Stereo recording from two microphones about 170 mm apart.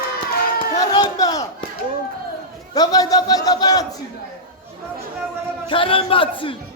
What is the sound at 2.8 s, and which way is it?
A man's voice, 20° left (ahead or behind).